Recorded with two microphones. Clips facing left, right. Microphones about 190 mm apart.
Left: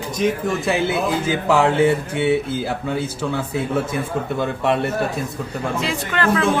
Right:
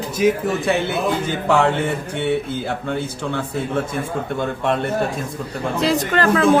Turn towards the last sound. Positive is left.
turn(degrees=-35)  # may be behind; listen again after turning